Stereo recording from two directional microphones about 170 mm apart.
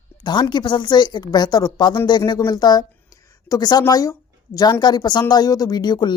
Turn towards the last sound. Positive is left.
turn(degrees=25)  # may be behind; listen again after turning